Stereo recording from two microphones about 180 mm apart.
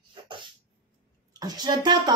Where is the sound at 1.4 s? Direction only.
20° right (ahead or behind).